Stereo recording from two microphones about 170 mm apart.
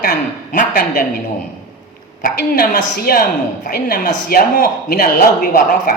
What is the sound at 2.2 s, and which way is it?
A man's voice, 60° left (ahead or behind).